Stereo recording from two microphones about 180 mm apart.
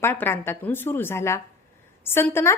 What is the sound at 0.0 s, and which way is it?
A woman's voice, 10° left (ahead or behind).